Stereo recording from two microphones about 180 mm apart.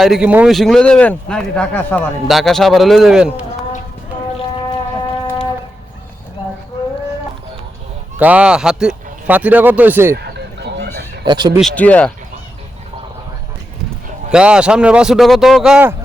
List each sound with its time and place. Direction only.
0.0 s a man's voice: 5° right (ahead or behind)
8.2 s a man's voice: 5° right (ahead or behind)
10.2 s fowl: 65° right (ahead or behind)
11.3 s speech: 25° right (ahead or behind)
11.7 s speech: 10° left (ahead or behind)
14.3 s a man's voice: 5° right (ahead or behind)